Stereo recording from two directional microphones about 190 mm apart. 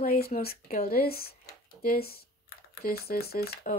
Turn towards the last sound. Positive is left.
turn(degrees=55)  # may be behind; listen again after turning